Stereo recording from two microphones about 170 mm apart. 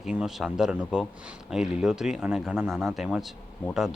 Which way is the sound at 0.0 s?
Centre (ahead or behind).